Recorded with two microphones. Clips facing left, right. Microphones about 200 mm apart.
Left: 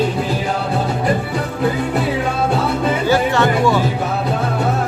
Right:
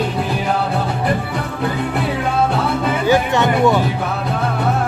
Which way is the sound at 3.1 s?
20° right (ahead or behind).